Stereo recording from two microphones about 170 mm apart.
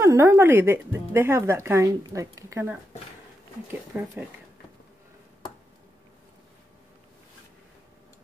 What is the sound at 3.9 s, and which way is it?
Speech, 10° right (ahead or behind).